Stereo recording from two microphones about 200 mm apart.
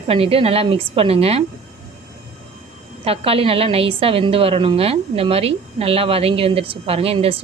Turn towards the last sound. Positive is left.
turn(degrees=-30)  # may be behind; listen again after turning